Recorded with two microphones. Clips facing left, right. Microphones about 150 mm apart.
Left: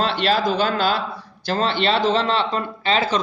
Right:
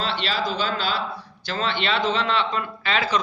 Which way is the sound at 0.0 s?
50° left (ahead or behind).